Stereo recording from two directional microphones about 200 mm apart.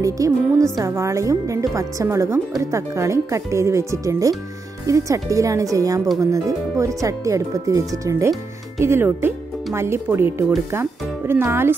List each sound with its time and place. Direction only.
0.0 s a woman's voice: 15° right (ahead or behind)